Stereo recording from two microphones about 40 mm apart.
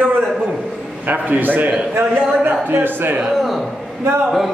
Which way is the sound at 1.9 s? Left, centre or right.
Right.